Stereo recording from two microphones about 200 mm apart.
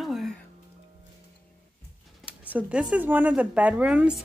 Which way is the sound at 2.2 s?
5° right (ahead or behind).